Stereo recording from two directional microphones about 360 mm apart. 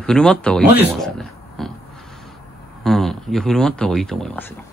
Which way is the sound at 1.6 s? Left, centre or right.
Centre.